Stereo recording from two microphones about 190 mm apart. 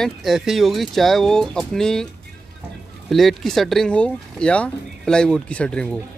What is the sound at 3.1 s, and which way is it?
Speech, centre (ahead or behind).